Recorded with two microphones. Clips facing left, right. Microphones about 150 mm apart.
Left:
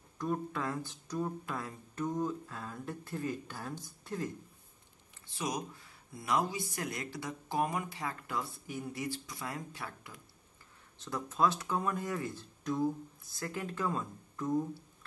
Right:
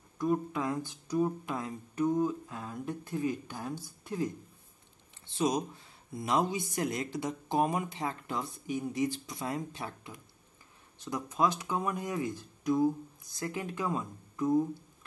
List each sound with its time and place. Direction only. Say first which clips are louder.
0.2 s speech: right 5 dB; 15° right (ahead or behind)
5.2 s speech: right 7 dB; 25° right (ahead or behind)